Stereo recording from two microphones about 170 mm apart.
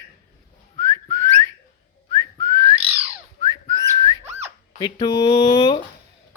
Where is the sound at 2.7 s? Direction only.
35° right (ahead or behind).